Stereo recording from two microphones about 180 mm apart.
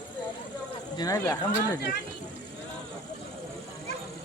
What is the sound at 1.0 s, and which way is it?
Speech, 20° left (ahead or behind).